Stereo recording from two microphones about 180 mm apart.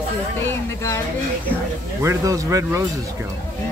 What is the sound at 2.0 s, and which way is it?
Speech, 15° right (ahead or behind).